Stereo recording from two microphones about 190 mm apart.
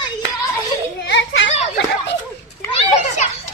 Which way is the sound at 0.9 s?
65° left (ahead or behind).